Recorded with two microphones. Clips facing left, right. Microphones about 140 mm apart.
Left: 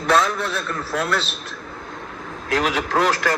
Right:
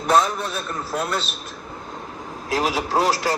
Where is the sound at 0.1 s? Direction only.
15° right (ahead or behind).